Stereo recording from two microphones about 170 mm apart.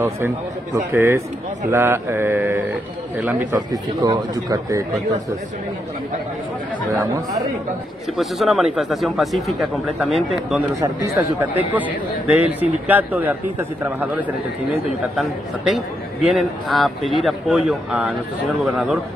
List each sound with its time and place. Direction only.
0.9 s a man's voice: 15° right (ahead or behind)
3.5 s speech: 20° right (ahead or behind)
7.0 s speech: 20° right (ahead or behind)
8.2 s speech: centre (ahead or behind)
10.7 s a man's voice: 20° right (ahead or behind); by 18.9 s centre (ahead or behind)